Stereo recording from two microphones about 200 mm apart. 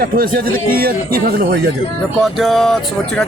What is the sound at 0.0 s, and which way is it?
Speech, 45° right (ahead or behind).